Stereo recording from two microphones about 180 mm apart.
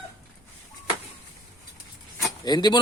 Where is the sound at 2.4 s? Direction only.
25° left (ahead or behind).